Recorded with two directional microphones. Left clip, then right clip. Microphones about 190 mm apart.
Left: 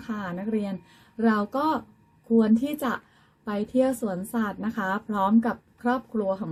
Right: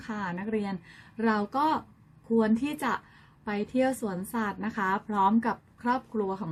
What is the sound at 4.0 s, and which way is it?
Speech, 15° right (ahead or behind).